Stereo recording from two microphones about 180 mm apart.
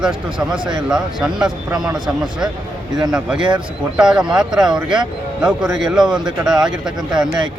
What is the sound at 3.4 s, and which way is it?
Speech, 25° right (ahead or behind).